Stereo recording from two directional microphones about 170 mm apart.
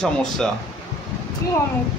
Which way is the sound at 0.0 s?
5° left (ahead or behind).